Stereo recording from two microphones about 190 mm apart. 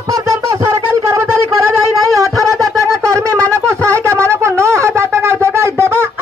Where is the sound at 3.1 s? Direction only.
15° right (ahead or behind).